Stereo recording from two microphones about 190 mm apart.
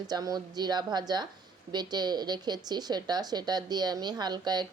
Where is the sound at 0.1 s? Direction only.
20° right (ahead or behind).